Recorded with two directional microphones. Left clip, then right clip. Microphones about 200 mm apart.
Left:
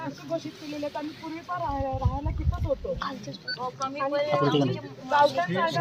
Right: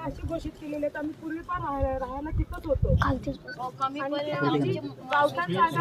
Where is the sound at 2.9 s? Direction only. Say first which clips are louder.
Right 6 dB; 60° right (ahead or behind).